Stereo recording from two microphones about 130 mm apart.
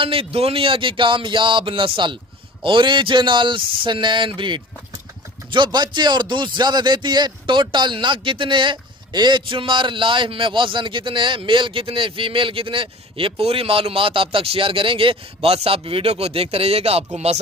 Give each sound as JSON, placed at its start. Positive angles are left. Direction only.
{"t": 0.0, "sound": "speech", "side_deg": -45}